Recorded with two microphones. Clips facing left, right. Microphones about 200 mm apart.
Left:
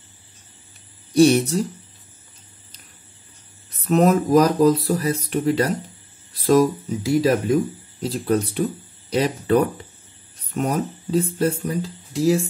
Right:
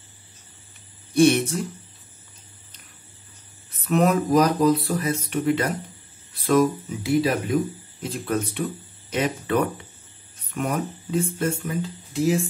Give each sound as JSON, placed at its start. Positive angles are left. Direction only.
{"t": 1.1, "sound": "speech", "side_deg": 35}
{"t": 3.7, "sound": "speech", "side_deg": 40}